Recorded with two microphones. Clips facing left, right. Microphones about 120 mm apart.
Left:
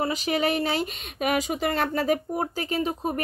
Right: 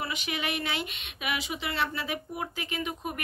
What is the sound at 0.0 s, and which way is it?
Speech, 40° left (ahead or behind).